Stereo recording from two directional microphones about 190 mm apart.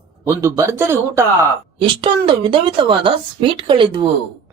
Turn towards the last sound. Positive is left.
turn(degrees=-25)  # may be behind; listen again after turning